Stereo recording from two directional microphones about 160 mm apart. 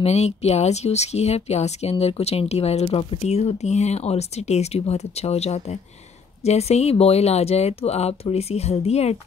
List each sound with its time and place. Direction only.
0.0 s speech: 40° left (ahead or behind)